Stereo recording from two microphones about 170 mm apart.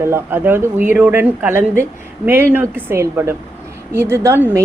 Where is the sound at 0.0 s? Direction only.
15° right (ahead or behind).